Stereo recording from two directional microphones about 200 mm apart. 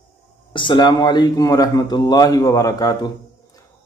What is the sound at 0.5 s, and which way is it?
Speech, 25° left (ahead or behind).